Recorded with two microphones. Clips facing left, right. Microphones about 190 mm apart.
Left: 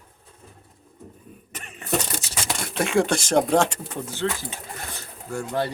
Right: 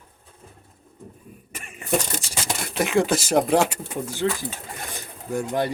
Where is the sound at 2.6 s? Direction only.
Centre (ahead or behind).